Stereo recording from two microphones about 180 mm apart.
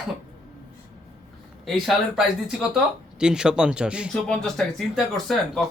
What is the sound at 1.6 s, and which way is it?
Speech, centre (ahead or behind).